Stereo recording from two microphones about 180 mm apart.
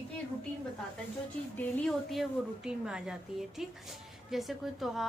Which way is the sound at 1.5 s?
5° left (ahead or behind).